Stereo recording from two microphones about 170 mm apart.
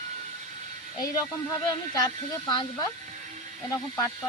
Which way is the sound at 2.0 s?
25° left (ahead or behind).